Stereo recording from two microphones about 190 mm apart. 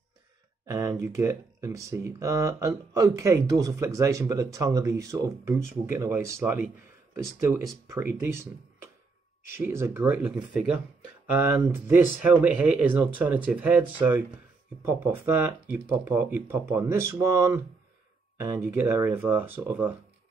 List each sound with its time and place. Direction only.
0.7 s speech: 15° right (ahead or behind)
7.7 s speech: 15° right (ahead or behind)